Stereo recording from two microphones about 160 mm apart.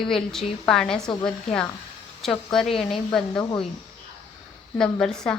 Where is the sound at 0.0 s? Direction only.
Centre (ahead or behind).